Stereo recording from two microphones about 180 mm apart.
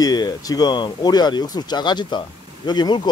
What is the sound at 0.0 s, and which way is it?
Speech, 20° left (ahead or behind).